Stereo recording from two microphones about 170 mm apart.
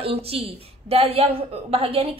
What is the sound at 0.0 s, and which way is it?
A woman's voice, 35° right (ahead or behind).